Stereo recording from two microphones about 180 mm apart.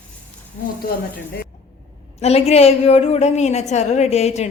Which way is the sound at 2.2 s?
35° left (ahead or behind).